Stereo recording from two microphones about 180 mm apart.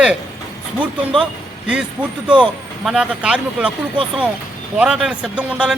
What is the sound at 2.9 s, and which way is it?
Speech, 5° right (ahead or behind).